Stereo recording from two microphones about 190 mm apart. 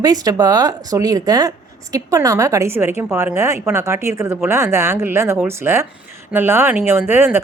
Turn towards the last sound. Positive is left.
turn(degrees=-10)  # may be behind; listen again after turning